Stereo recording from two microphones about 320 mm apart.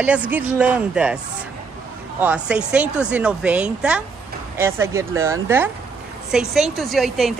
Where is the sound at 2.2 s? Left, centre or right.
Centre.